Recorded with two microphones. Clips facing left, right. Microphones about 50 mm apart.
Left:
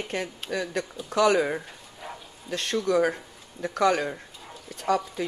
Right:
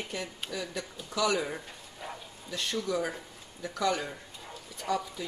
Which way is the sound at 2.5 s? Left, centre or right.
Left.